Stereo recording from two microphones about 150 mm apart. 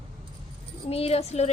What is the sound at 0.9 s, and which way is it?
Speech, 45° left (ahead or behind).